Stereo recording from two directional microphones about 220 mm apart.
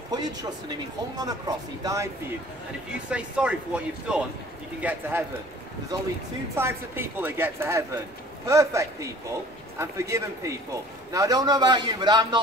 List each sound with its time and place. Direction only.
0.1 s speech: 15° right (ahead or behind)
3.1 s speech: 5° right (ahead or behind)
6.5 s speech: 10° right (ahead or behind)